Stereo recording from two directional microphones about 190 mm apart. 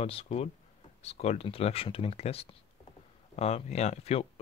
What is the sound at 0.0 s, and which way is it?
Speech, 30° left (ahead or behind).